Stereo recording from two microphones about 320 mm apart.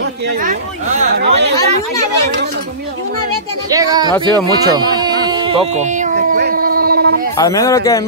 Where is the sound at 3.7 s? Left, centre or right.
Centre.